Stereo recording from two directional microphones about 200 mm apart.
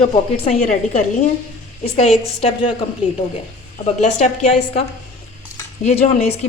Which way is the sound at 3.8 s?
30° left (ahead or behind).